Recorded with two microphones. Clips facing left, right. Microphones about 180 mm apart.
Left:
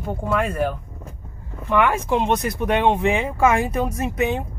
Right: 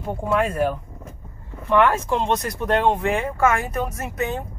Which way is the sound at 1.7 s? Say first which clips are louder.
Right 1 dB; 10° left (ahead or behind).